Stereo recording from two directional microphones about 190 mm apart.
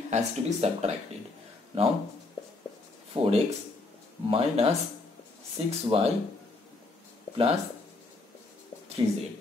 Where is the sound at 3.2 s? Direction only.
30° right (ahead or behind).